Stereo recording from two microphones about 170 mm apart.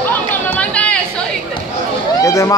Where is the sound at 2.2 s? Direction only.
15° left (ahead or behind).